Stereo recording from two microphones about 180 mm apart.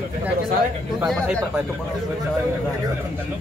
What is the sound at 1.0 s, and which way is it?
Speech, centre (ahead or behind).